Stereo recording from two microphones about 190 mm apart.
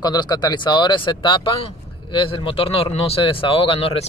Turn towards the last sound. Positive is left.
turn(degrees=30)  # may be behind; listen again after turning